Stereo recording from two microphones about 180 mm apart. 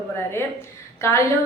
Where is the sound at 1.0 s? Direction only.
15° left (ahead or behind).